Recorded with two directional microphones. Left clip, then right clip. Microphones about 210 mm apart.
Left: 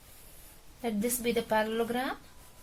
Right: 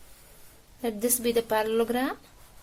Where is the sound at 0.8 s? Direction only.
50° right (ahead or behind).